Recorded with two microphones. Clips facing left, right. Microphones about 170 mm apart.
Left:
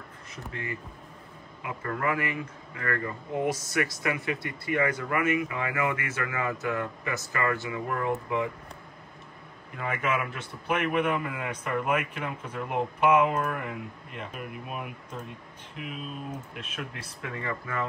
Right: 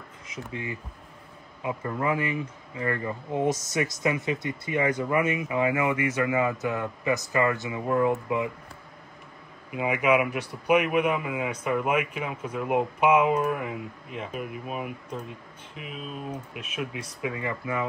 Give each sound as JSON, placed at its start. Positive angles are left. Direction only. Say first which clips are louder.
{"t": 0.5, "sound": "speech", "louder": "right 1 dB", "side_deg": -15}
{"t": 9.7, "sound": "speech", "louder": "right 7 dB", "side_deg": -10}